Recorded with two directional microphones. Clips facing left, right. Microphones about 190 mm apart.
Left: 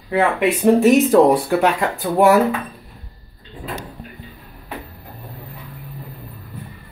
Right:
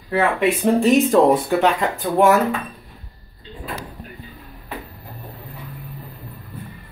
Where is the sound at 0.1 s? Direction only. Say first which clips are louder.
Left 1 dB; 15° left (ahead or behind).